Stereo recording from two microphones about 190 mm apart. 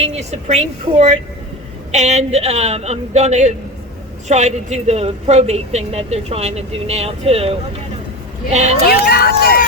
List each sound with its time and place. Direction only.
0.0 s speech: 35° right (ahead or behind)
8.9 s speech: 55° left (ahead or behind)